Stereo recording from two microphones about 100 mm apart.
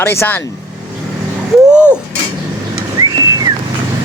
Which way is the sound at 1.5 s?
10° right (ahead or behind).